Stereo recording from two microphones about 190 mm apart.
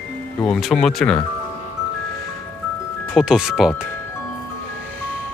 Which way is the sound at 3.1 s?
5° right (ahead or behind).